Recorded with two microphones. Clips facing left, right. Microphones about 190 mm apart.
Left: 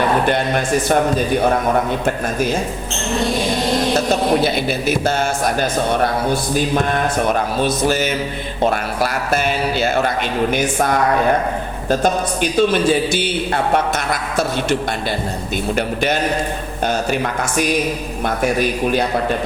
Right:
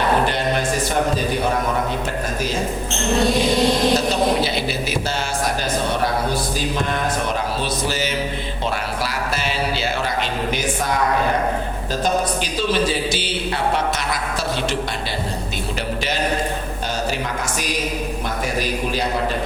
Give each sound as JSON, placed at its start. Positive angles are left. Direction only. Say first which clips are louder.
{"t": 4.4, "sound": "a man's voice", "louder": "left 5 dB", "side_deg": 50}
{"t": 7.3, "sound": "a man's voice", "louder": "left 5 dB", "side_deg": 50}
{"t": 12.4, "sound": "a man's voice", "louder": "left 5 dB", "side_deg": 55}
{"t": 16.8, "sound": "a man's voice", "louder": "left 7 dB", "side_deg": 55}